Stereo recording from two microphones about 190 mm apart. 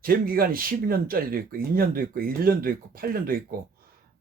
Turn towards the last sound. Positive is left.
turn(degrees=-50)  # may be behind; listen again after turning